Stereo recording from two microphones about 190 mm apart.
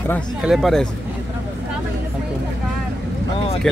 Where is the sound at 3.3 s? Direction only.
30° left (ahead or behind).